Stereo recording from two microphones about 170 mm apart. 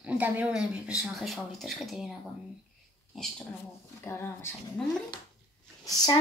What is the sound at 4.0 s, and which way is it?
Speech, 15° left (ahead or behind).